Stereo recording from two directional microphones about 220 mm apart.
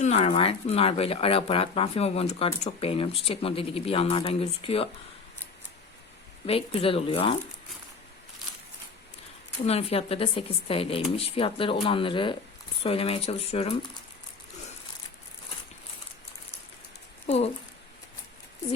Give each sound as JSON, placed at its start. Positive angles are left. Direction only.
{"t": 0.0, "sound": "speech", "side_deg": 30}
{"t": 6.4, "sound": "speech", "side_deg": 25}
{"t": 9.6, "sound": "speech", "side_deg": 25}
{"t": 17.2, "sound": "speech", "side_deg": 30}